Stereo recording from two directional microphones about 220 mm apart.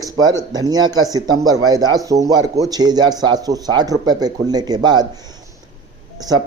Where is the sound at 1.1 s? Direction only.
20° right (ahead or behind).